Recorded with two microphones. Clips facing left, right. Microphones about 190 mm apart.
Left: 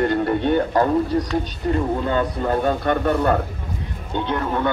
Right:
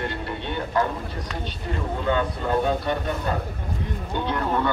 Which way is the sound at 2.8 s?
60° left (ahead or behind).